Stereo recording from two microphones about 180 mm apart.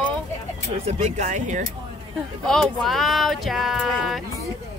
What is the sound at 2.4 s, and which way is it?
Speech, centre (ahead or behind).